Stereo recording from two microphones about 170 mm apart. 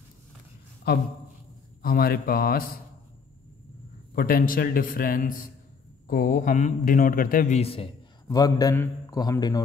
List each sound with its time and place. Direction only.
0.9 s a man's voice: 70° left (ahead or behind)
4.1 s a man's voice: 60° left (ahead or behind)
7.5 s a man's voice: 35° left (ahead or behind)
8.3 s a man's voice: 20° left (ahead or behind)